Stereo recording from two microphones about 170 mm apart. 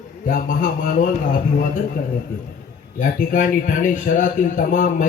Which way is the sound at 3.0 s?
50° left (ahead or behind).